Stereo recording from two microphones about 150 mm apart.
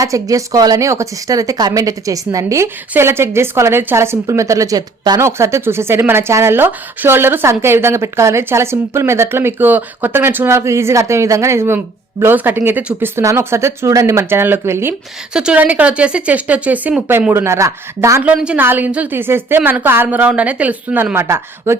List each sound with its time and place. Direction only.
0.0 s a woman's voice: 25° right (ahead or behind)
15.3 s a woman's voice: 5° right (ahead or behind)
18.3 s a woman's voice: 5° right (ahead or behind)